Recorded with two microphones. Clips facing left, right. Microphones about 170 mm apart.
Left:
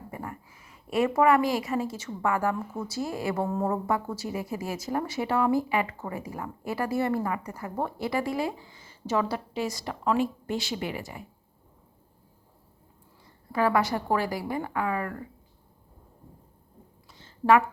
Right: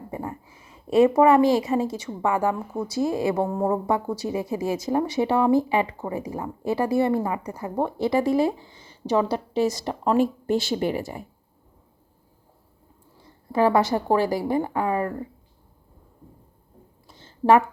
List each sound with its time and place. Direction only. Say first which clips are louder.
0.1 s a woman's voice: right 6 dB; 25° right (ahead or behind)
13.5 s a woman's voice: right 5 dB; 30° right (ahead or behind)
17.1 s a sound: right 3 dB; 30° right (ahead or behind)